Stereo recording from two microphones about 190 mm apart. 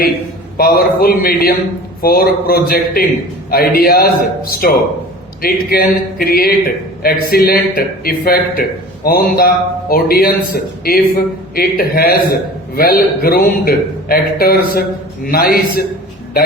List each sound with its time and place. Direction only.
0.5 s a man's voice: 50° left (ahead or behind)